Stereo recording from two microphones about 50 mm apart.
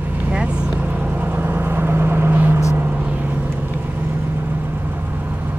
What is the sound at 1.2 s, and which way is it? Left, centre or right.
Vehicle, right.